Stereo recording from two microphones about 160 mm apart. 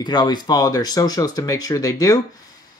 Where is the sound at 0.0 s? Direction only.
25° left (ahead or behind).